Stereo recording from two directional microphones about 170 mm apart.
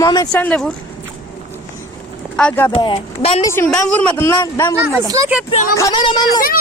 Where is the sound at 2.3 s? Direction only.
10° left (ahead or behind).